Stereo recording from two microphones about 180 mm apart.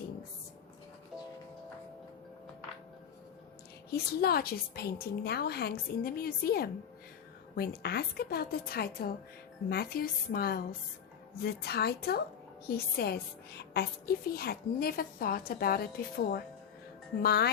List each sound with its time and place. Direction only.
3.9 s a woman's voice: 60° left (ahead or behind)